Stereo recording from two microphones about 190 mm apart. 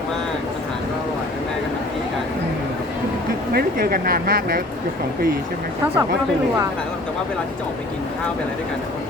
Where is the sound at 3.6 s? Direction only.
50° right (ahead or behind).